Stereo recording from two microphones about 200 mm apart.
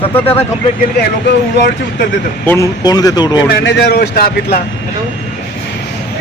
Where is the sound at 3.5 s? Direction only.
55° left (ahead or behind).